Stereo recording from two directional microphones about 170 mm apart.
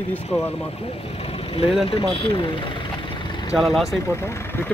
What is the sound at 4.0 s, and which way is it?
Speech, 15° left (ahead or behind).